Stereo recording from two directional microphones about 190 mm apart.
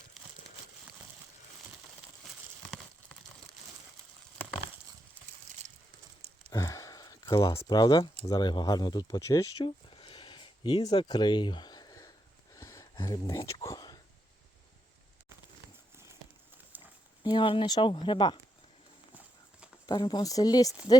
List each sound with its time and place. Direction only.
6.5 s speech: 15° left (ahead or behind)
9.9 s a sound: 30° left (ahead or behind)
16.7 s a sound: 10° right (ahead or behind)
17.2 s speech: 25° left (ahead or behind)
19.1 s clip-clop: 5° right (ahead or behind)
19.9 s speech: 25° left (ahead or behind)